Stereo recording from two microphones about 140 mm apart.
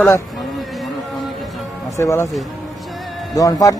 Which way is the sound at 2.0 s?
20° left (ahead or behind).